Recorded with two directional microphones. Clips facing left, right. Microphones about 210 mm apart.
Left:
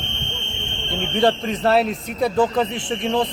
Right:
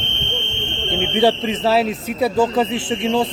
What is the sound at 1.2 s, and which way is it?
A man's voice, 5° right (ahead or behind).